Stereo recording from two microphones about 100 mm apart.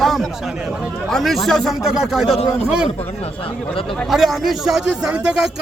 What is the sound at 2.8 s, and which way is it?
Speech, 80° left.